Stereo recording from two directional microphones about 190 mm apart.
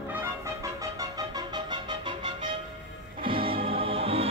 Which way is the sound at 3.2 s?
25° right (ahead or behind).